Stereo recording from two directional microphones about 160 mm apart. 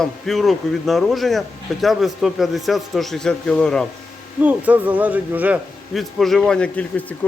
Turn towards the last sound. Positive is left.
turn(degrees=10)  # may be behind; listen again after turning